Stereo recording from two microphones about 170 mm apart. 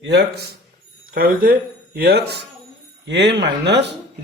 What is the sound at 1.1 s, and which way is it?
Speech, 60° right (ahead or behind).